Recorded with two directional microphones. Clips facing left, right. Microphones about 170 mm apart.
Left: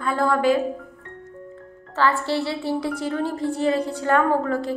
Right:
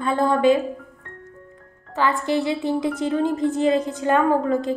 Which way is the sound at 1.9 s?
15° right (ahead or behind).